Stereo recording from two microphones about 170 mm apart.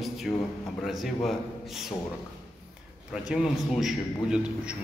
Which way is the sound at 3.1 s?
5° right (ahead or behind).